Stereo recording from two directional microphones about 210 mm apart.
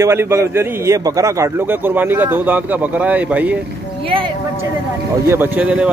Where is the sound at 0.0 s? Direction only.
10° right (ahead or behind).